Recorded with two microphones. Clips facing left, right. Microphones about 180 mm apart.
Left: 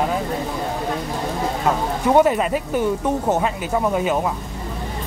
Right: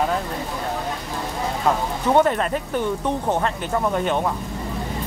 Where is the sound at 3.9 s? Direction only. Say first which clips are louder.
Left 1 dB; 5° left (ahead or behind).